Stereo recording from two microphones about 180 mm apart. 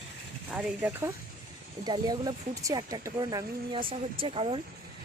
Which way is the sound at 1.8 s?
20° right (ahead or behind).